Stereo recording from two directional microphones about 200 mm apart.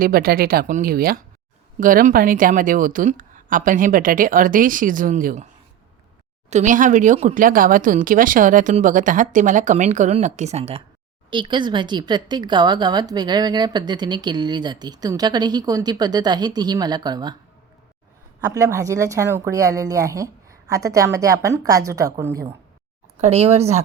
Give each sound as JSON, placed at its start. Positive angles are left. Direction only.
{"t": 0.0, "sound": "a woman's voice", "side_deg": -50}
{"t": 6.5, "sound": "speech", "side_deg": -35}
{"t": 18.3, "sound": "a woman's voice", "side_deg": -15}
{"t": 23.2, "sound": "speech", "side_deg": -30}